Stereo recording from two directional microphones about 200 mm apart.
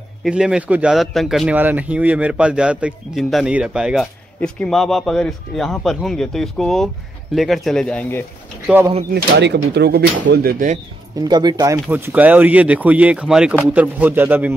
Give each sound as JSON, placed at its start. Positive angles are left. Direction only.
{"t": 0.2, "sound": "a man's voice", "side_deg": -5}
{"t": 9.1, "sound": "speech", "side_deg": -55}
{"t": 11.1, "sound": "speech", "side_deg": -20}